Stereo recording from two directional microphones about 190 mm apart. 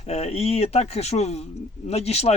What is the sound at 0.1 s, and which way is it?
Speech, 35° left (ahead or behind).